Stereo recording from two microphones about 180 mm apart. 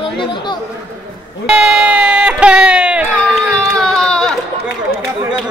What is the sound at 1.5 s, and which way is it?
Speech, 5° right (ahead or behind).